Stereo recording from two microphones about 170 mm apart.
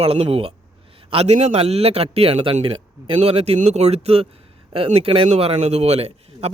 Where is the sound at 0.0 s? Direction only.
35° right (ahead or behind).